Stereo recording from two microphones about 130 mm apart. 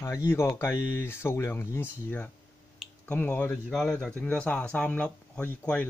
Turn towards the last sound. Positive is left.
turn(degrees=10)  # may be behind; listen again after turning